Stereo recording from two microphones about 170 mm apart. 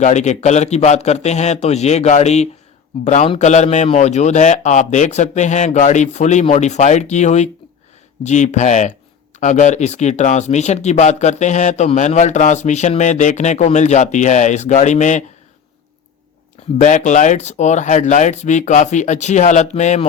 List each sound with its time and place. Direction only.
0.0 s a man's voice: 45° left (ahead or behind)
16.7 s speech: 45° left (ahead or behind)